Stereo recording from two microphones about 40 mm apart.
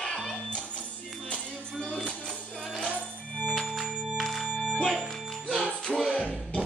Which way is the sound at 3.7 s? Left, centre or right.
Centre.